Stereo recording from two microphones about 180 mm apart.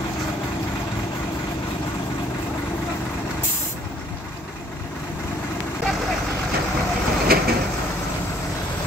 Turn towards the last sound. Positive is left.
turn(degrees=-55)  # may be behind; listen again after turning